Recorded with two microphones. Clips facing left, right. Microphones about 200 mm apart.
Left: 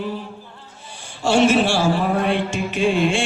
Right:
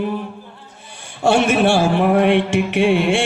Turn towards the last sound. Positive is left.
turn(degrees=-65)  # may be behind; listen again after turning